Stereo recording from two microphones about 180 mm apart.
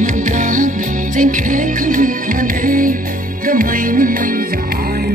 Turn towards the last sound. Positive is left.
turn(degrees=-50)  # may be behind; listen again after turning